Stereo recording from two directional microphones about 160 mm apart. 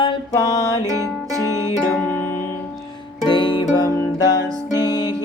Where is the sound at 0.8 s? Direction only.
20° right (ahead or behind).